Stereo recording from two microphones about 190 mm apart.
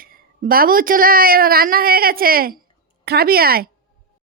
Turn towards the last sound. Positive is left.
turn(degrees=-55)  # may be behind; listen again after turning